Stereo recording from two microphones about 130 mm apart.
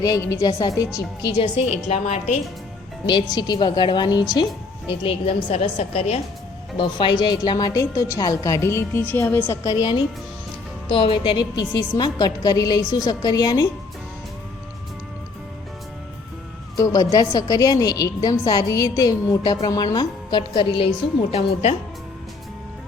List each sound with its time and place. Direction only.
0.0 s a woman's voice: 25° left (ahead or behind)
1.4 s a woman's voice: 50° left (ahead or behind)
3.3 s a woman's voice: 30° left (ahead or behind)
4.9 s a woman's voice: 45° left (ahead or behind)
5.6 s a woman's voice: 60° left (ahead or behind)
6.7 s a woman's voice: 35° left (ahead or behind); by 9.4 s 20° left (ahead or behind)
9.5 s a woman's voice: 30° left (ahead or behind)
10.8 s a woman's voice: 40° left (ahead or behind)
16.7 s a woman's voice: 25° left (ahead or behind)
21.2 s a woman's voice: 50° left (ahead or behind)